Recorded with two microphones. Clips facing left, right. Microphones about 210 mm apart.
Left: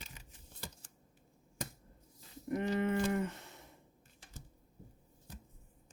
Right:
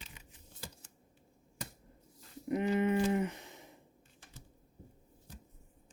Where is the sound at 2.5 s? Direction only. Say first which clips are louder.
Right 3 dB; 20° right (ahead or behind).